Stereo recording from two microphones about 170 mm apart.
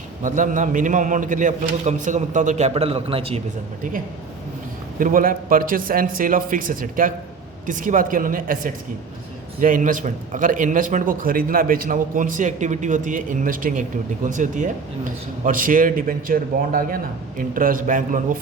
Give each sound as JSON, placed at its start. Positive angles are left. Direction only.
{"t": 0.2, "sound": "a man's voice", "side_deg": -50}
{"t": 4.9, "sound": "a man's voice", "side_deg": -55}